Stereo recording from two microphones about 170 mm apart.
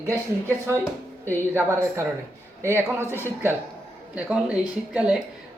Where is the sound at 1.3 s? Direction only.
15° right (ahead or behind).